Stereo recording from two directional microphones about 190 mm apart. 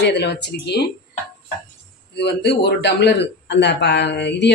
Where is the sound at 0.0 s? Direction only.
60° left (ahead or behind).